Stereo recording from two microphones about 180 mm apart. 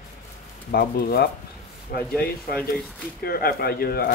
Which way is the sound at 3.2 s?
55° left (ahead or behind).